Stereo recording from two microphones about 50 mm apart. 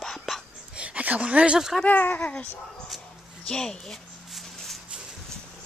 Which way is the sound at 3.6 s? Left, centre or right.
Centre.